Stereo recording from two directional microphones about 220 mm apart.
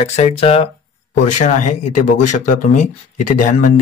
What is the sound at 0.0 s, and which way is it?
Speech, 30° left (ahead or behind).